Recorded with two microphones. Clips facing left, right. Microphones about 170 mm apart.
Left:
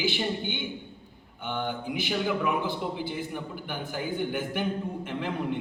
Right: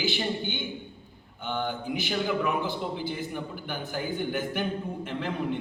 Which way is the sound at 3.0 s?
15° left (ahead or behind).